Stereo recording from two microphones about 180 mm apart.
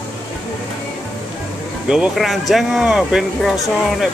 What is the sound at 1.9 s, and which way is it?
Speech, centre (ahead or behind).